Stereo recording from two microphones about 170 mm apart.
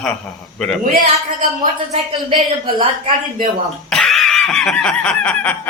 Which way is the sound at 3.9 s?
Centre (ahead or behind).